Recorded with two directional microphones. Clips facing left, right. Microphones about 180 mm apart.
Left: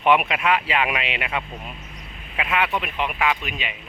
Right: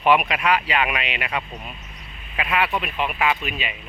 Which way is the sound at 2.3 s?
Centre (ahead or behind).